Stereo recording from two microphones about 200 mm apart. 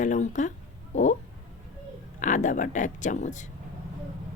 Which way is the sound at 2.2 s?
40° left (ahead or behind).